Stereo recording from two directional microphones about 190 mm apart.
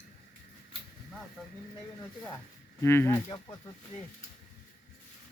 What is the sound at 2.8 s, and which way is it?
Speech, 10° left (ahead or behind).